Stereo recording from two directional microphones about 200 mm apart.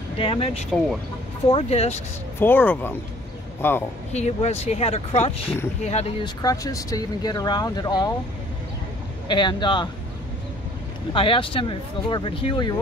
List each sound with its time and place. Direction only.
0.2 s speech: 30° left (ahead or behind)
2.3 s speech: 10° left (ahead or behind)
4.1 s speech: 35° left (ahead or behind)
9.3 s speech: 25° left (ahead or behind)
11.1 s speech: 25° left (ahead or behind)